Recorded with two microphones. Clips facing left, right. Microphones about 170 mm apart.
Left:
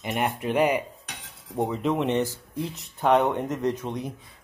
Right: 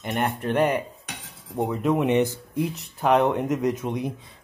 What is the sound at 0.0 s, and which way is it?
Speech, 5° left (ahead or behind).